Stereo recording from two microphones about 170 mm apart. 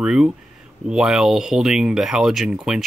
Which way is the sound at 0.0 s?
5° right (ahead or behind).